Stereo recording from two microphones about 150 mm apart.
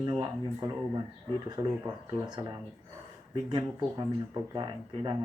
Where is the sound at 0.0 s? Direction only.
30° right (ahead or behind).